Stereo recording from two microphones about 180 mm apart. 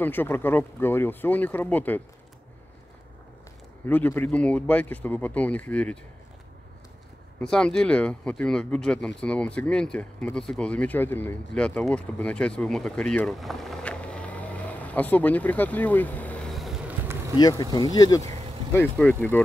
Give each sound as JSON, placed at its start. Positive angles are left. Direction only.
{"t": 0.0, "sound": "speech", "side_deg": 10}
{"t": 3.8, "sound": "speech", "side_deg": 10}
{"t": 7.3, "sound": "speech", "side_deg": 5}
{"t": 17.4, "sound": "speech", "side_deg": 20}
{"t": 18.7, "sound": "speech", "side_deg": 10}